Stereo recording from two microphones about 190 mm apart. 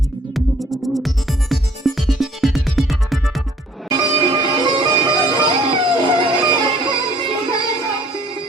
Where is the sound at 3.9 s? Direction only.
25° right (ahead or behind).